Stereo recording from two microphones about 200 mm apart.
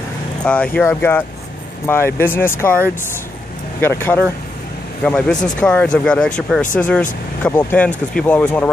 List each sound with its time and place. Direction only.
0.4 s speech: 5° left (ahead or behind)
3.8 s speech: 10° left (ahead or behind)